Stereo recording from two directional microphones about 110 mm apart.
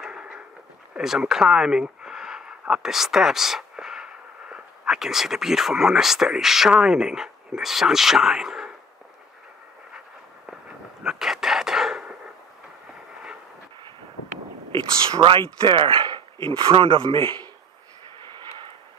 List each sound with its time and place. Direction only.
0.0 s a sound: 10° right (ahead or behind)
0.9 s speech: 5° right (ahead or behind)
11.0 s chicken: 5° right (ahead or behind)
14.7 s speech: 50° right (ahead or behind)